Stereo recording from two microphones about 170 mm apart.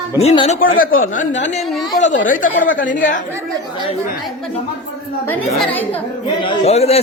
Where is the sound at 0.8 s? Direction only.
55° left (ahead or behind).